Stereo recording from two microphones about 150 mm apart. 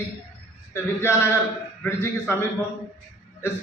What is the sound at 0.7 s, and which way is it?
A man's voice, 15° left (ahead or behind).